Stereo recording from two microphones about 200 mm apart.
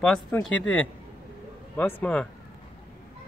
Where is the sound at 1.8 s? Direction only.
10° left (ahead or behind).